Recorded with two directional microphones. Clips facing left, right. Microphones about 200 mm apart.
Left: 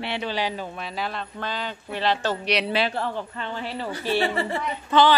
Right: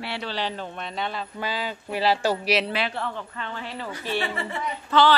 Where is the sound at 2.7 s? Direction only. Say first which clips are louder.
Left 3 dB; 35° left (ahead or behind).